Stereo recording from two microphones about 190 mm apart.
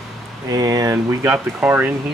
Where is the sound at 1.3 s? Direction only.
10° right (ahead or behind).